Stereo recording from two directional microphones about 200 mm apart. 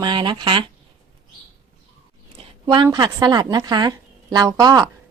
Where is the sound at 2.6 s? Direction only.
20° right (ahead or behind).